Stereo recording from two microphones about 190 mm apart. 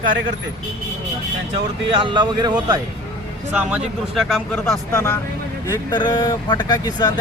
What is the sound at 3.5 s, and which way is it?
Speech, 5° right (ahead or behind).